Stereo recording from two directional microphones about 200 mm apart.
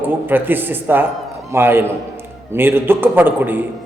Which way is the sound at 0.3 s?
10° right (ahead or behind).